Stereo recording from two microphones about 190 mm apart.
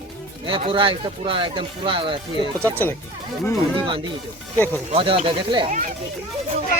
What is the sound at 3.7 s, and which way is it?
Speech, 25° right (ahead or behind).